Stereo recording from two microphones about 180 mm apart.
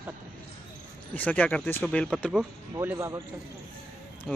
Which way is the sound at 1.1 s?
10° left (ahead or behind).